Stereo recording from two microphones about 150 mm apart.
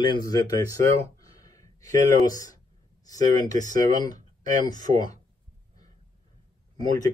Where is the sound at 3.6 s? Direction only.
25° left (ahead or behind).